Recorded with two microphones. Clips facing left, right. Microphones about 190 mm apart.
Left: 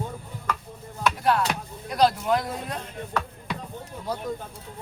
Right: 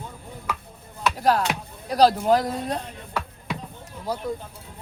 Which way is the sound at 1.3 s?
40° right (ahead or behind).